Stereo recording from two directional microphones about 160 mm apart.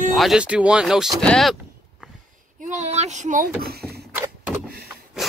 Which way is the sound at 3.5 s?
70° right (ahead or behind).